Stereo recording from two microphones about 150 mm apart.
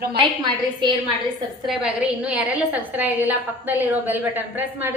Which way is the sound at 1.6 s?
5° right (ahead or behind).